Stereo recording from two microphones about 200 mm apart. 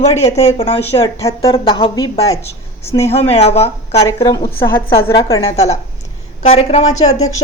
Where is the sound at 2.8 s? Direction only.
15° left (ahead or behind).